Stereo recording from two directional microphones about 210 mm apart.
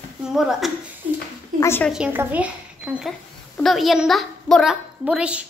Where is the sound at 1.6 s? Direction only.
10° left (ahead or behind).